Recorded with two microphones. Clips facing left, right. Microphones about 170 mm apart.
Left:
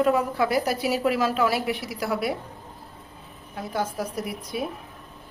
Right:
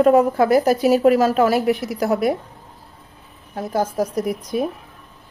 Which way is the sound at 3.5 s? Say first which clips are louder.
Right 7 dB; 45° right (ahead or behind).